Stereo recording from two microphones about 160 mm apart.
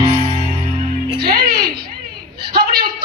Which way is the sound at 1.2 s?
80° right.